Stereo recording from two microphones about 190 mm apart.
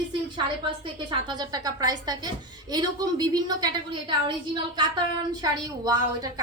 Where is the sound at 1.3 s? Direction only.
20° right (ahead or behind).